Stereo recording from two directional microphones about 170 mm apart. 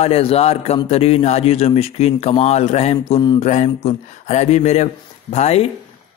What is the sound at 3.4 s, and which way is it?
Speech, 40° left (ahead or behind).